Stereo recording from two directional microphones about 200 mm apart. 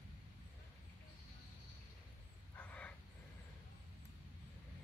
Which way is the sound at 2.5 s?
5° left (ahead or behind).